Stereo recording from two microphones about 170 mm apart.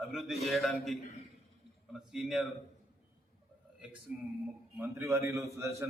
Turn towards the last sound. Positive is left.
turn(degrees=-15)  # may be behind; listen again after turning